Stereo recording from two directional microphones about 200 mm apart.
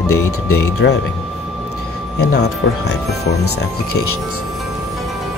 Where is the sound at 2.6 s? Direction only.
55° left (ahead or behind).